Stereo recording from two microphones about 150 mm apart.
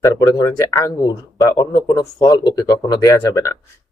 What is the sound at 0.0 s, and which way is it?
Speech, 25° left (ahead or behind).